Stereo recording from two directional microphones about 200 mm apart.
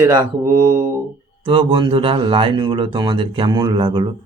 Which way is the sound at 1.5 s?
25° right (ahead or behind).